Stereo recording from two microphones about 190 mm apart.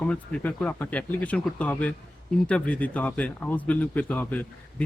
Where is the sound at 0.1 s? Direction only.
5° left (ahead or behind).